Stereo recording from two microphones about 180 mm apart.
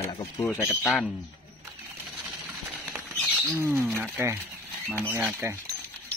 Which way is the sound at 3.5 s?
15° right (ahead or behind).